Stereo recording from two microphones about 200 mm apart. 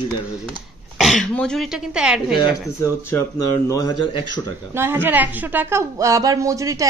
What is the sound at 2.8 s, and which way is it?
Speech, 15° left (ahead or behind).